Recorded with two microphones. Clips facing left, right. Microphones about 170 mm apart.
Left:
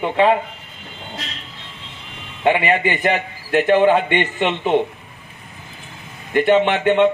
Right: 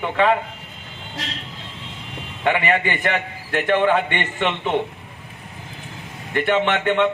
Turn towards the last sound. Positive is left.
turn(degrees=20)  # may be behind; listen again after turning